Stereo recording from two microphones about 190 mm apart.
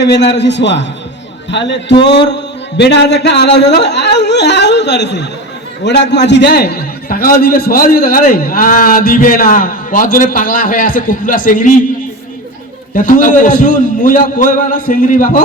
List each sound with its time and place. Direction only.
0.0 s a man's voice: 65° left (ahead or behind); by 11.7 s 45° left (ahead or behind)
13.0 s a man's voice: 45° left (ahead or behind)